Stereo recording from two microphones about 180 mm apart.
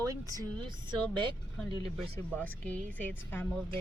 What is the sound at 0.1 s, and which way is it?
Speech, 20° right (ahead or behind).